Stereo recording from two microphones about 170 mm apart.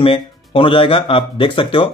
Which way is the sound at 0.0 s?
30° left (ahead or behind).